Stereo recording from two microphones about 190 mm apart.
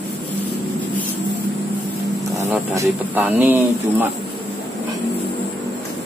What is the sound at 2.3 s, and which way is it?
Speech, 15° right (ahead or behind).